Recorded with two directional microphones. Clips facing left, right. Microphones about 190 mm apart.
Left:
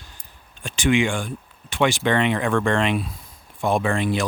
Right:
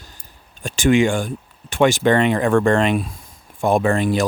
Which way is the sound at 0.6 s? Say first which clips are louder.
Right 4 dB; 40° right (ahead or behind).